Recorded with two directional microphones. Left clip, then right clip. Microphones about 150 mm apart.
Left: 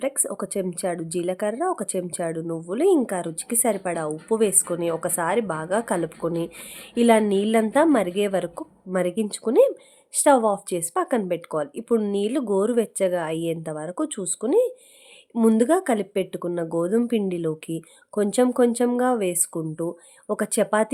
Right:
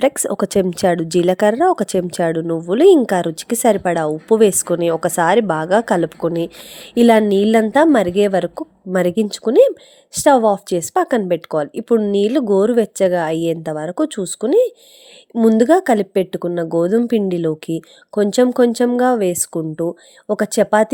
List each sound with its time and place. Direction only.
0.0 s a woman's voice: 50° right (ahead or behind); by 20.9 s 35° right (ahead or behind)